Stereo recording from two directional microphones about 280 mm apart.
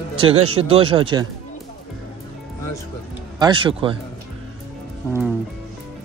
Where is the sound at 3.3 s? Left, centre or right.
Centre.